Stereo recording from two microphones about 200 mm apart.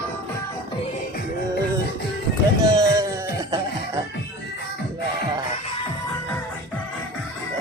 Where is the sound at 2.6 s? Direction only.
20° right (ahead or behind).